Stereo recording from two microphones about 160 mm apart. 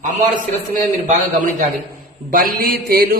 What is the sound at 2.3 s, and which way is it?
Mantra, 65° right (ahead or behind).